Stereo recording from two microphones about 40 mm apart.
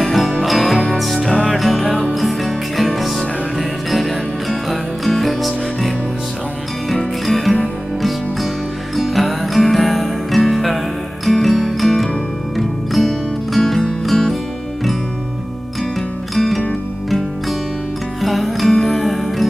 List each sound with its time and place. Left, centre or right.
0.0 s music: centre
7.2 s music: centre
8.9 s music: centre
16.3 s music: centre
18.2 s music: centre